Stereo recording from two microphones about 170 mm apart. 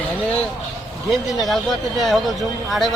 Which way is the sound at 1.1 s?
Centre (ahead or behind).